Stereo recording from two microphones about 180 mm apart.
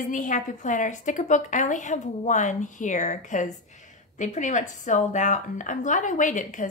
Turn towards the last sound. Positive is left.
turn(degrees=45)  # may be behind; listen again after turning